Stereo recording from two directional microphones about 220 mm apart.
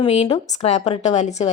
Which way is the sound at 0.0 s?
25° left (ahead or behind).